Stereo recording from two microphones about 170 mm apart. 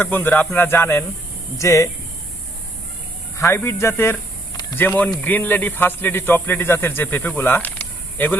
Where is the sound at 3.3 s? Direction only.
15° left (ahead or behind).